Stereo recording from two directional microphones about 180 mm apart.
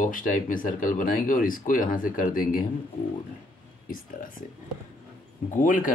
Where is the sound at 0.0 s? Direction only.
45° left (ahead or behind).